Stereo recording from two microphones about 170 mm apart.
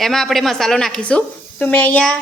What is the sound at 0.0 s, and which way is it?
A woman's voice, centre (ahead or behind).